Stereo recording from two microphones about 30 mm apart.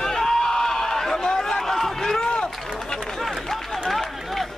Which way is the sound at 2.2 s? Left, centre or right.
Left.